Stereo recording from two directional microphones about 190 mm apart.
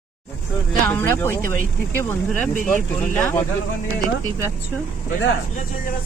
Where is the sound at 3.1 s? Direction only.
10° left (ahead or behind).